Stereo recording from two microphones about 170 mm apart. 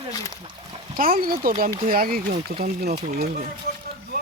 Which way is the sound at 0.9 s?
60° right (ahead or behind).